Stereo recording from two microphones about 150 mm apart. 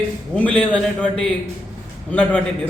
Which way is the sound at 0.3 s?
10° left (ahead or behind).